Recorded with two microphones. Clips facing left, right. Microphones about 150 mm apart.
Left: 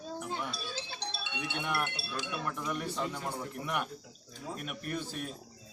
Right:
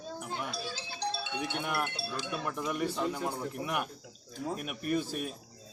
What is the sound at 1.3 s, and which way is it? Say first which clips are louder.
Speech: right 3 dB; 45° right (ahead or behind).